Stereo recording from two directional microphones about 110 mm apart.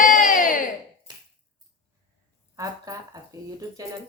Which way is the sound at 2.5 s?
35° right (ahead or behind).